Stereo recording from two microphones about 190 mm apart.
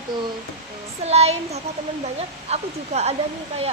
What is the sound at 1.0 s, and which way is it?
Speech, 35° right (ahead or behind).